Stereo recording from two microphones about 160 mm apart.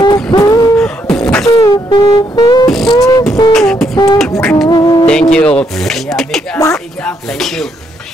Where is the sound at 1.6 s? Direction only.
25° left (ahead or behind).